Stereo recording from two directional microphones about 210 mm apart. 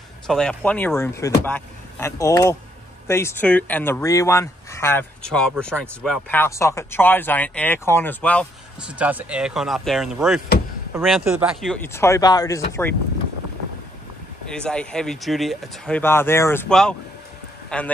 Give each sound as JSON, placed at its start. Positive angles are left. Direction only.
{"t": 0.3, "sound": "speech", "side_deg": 5}
{"t": 8.8, "sound": "speech", "side_deg": -5}
{"t": 11.6, "sound": "speech", "side_deg": 5}
{"t": 14.5, "sound": "speech", "side_deg": 5}